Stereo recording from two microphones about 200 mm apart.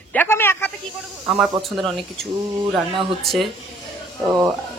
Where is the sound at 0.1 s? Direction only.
10° left (ahead or behind).